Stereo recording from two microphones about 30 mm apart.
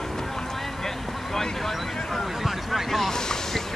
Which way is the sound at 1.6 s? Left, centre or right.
Centre.